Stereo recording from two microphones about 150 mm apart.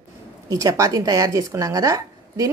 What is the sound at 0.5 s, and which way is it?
Speech, 20° right (ahead or behind).